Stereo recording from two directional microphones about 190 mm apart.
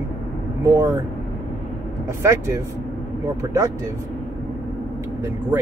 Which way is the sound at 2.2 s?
15° right (ahead or behind).